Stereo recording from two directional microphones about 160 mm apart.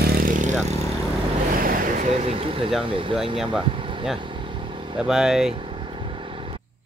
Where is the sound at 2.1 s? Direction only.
40° right (ahead or behind).